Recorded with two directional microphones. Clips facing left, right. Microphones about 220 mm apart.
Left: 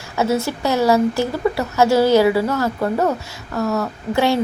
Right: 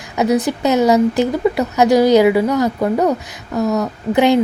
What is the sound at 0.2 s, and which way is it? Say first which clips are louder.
Speech: right 4 dB; 15° right (ahead or behind).